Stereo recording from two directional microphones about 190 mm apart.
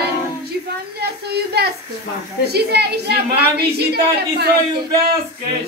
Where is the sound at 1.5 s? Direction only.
60° right (ahead or behind).